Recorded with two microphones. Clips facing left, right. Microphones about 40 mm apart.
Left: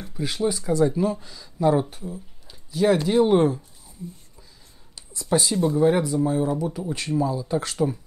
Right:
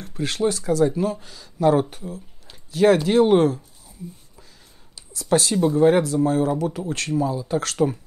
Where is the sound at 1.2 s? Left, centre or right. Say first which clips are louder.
Right 2 dB; right.